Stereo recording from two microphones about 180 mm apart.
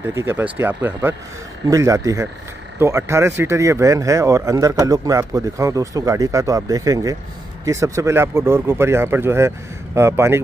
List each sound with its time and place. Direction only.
0.1 s speech: 15° right (ahead or behind)